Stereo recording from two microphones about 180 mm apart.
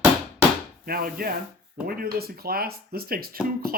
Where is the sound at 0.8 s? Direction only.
55° right (ahead or behind).